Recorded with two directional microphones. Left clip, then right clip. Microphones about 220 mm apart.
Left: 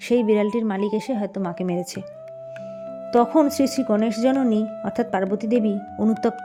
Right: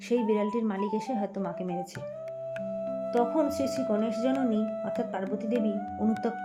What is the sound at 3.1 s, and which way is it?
Speech, 45° left (ahead or behind).